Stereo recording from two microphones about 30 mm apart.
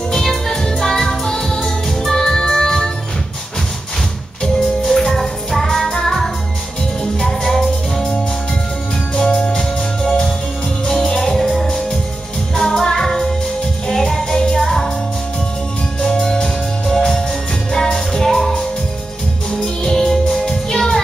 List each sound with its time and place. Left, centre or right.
0.1 s music: centre
4.4 s music: centre
7.2 s music: centre
9.3 s music: left
10.9 s music: centre
11.3 s music: centre
16.0 s music: centre
19.6 s music: centre